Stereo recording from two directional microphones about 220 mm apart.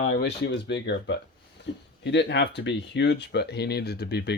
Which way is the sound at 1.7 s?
55° left (ahead or behind).